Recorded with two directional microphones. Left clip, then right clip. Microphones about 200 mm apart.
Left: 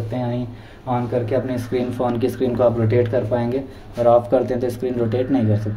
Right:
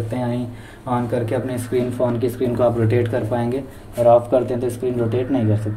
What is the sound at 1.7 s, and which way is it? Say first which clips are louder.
Speech: right 2 dB; 25° left (ahead or behind).